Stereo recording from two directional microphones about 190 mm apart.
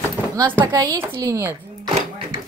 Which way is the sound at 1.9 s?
35° right (ahead or behind).